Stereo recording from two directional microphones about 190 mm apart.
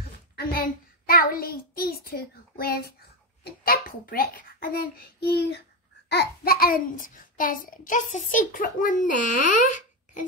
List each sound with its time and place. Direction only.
0.4 s a child's voice: 50° left (ahead or behind)